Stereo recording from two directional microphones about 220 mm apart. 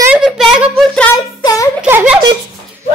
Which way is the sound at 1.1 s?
15° left (ahead or behind).